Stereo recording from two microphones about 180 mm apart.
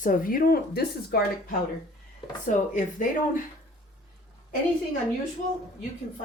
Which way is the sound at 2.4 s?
45° left (ahead or behind).